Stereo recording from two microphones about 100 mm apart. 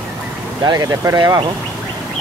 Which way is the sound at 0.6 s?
40° right (ahead or behind).